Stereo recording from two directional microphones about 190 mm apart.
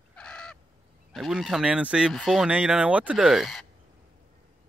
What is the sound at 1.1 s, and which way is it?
Speech, centre (ahead or behind).